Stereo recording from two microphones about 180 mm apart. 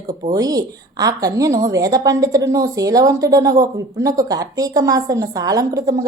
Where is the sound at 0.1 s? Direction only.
20° right (ahead or behind).